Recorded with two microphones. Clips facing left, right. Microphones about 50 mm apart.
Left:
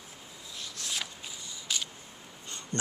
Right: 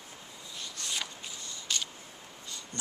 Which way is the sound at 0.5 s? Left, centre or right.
Centre.